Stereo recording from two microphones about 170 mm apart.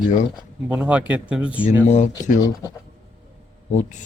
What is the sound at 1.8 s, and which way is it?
Speech, 45° left (ahead or behind).